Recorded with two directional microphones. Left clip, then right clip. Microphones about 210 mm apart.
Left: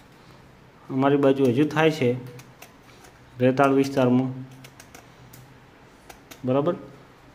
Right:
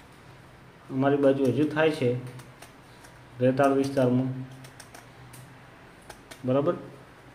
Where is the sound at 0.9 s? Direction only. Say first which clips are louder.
Left 3 dB; 30° left (ahead or behind).